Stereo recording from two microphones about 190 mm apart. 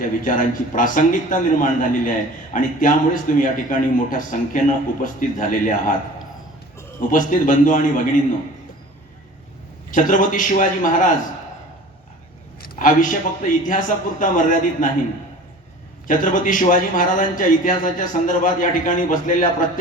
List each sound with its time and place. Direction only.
0.0 s a man's voice: 45° left (ahead or behind)
7.1 s a man's voice: 45° left (ahead or behind)
9.9 s a man's voice: 45° left (ahead or behind)
12.6 s a man's voice: 45° left (ahead or behind)
16.0 s a man's voice: 45° left (ahead or behind)